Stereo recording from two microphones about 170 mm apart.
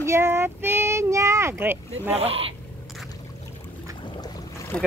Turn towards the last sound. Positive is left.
turn(degrees=20)  # may be behind; listen again after turning